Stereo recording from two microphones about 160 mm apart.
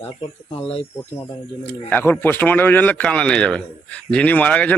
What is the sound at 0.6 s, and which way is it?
Speech, 35° left (ahead or behind).